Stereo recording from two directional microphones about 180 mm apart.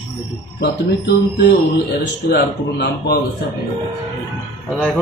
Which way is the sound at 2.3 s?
65° left (ahead or behind).